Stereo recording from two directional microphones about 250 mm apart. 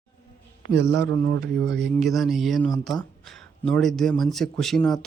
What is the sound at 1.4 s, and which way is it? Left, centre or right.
Speech, right.